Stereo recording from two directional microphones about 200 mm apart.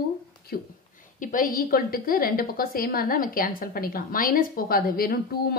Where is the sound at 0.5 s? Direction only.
45° left (ahead or behind).